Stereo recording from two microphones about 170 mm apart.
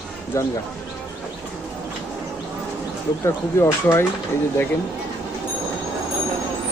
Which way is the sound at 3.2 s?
15° left (ahead or behind).